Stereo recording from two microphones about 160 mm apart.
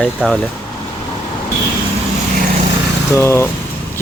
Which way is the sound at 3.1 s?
15° left (ahead or behind).